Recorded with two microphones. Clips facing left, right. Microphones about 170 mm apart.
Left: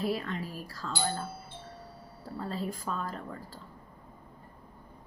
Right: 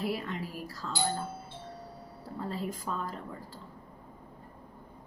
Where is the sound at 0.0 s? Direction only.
15° right (ahead or behind).